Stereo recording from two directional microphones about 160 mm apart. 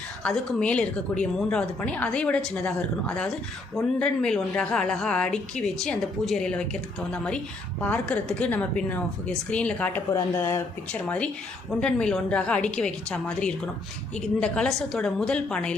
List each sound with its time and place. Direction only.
0.2 s a woman's voice: 5° left (ahead or behind)
7.8 s a woman's voice: 10° left (ahead or behind)
11.8 s a woman's voice: 5° left (ahead or behind)